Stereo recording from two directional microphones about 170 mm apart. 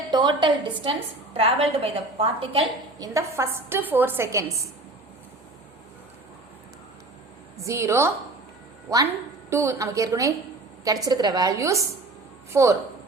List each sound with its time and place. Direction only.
0.1 s a woman's voice: 25° right (ahead or behind)
3.1 s a woman's voice: 15° right (ahead or behind)
7.6 s a woman's voice: 15° right (ahead or behind)
9.5 s a woman's voice: 15° right (ahead or behind)